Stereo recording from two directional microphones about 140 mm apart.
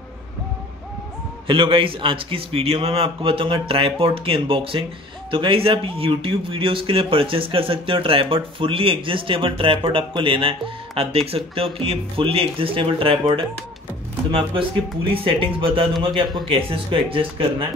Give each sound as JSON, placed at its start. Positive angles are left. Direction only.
{"t": 1.5, "sound": "speech", "side_deg": -40}